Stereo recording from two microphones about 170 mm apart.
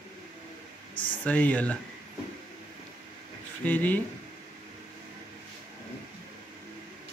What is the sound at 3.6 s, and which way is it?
Speech, 10° left (ahead or behind).